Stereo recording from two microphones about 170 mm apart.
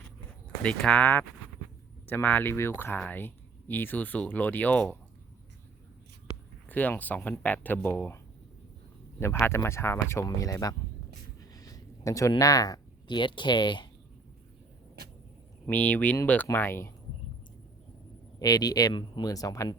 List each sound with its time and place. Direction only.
0.6 s speech: 5° left (ahead or behind)
6.7 s speech: 10° left (ahead or behind)
9.5 s speech: 15° left (ahead or behind)
11.3 s a sound: 20° left (ahead or behind)
15.6 s speech: 10° left (ahead or behind)
18.3 s speech: 20° left (ahead or behind)